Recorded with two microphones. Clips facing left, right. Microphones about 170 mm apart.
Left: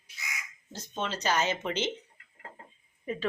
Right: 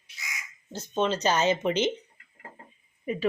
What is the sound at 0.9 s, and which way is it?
Speech, 20° right (ahead or behind).